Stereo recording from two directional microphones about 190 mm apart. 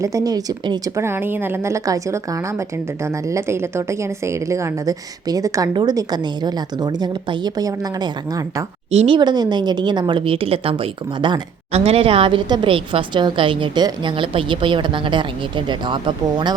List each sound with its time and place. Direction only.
0.0 s speech: 15° right (ahead or behind)
8.9 s a woman's voice: 30° right (ahead or behind)